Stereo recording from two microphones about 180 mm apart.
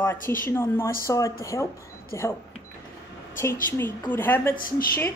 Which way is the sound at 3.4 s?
10° left (ahead or behind).